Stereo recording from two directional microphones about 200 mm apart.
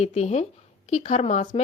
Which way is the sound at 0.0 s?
35° left (ahead or behind).